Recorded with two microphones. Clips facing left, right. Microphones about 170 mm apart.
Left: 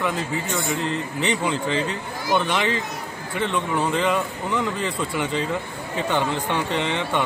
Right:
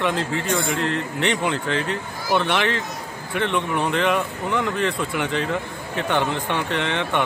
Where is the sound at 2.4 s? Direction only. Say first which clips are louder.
Right 1 dB; 70° right (ahead or behind).